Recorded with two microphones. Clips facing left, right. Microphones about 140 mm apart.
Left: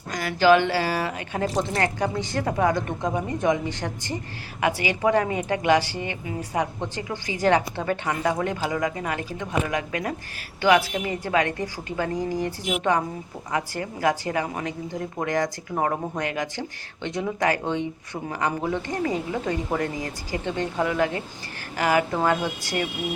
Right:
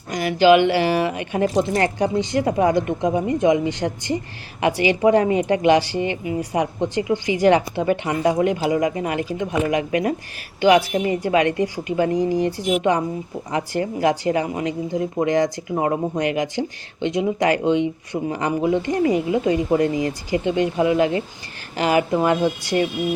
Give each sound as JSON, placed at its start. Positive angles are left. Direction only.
{"t": 0.1, "sound": "speech", "side_deg": -20}
{"t": 10.9, "sound": "a woman's voice", "side_deg": -30}